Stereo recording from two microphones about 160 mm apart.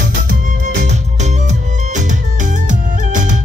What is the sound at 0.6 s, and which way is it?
Music, 45° right (ahead or behind).